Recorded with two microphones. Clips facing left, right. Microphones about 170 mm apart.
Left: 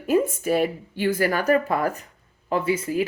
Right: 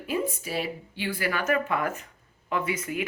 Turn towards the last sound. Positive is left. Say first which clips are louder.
# left 7 dB
turn(degrees=30)  # may be behind; listen again after turning